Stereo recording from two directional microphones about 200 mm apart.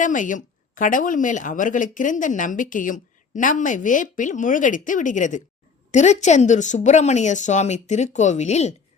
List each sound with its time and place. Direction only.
0.0 s speech: 40° left (ahead or behind)